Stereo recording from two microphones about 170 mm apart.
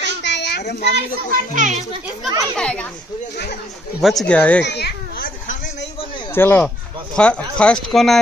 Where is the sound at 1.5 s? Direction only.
45° right (ahead or behind).